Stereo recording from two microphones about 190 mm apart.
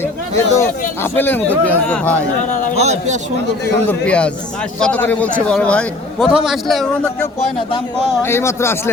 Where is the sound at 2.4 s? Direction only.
40° left (ahead or behind).